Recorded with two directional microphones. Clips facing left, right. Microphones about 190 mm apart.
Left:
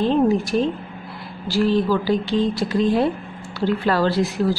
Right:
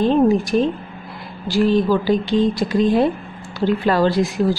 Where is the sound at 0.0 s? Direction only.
15° right (ahead or behind).